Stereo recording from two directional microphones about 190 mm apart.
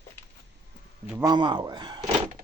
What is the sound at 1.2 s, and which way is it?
Speech, 25° right (ahead or behind).